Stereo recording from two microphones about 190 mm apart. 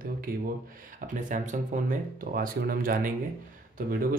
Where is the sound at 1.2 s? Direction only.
45° right (ahead or behind).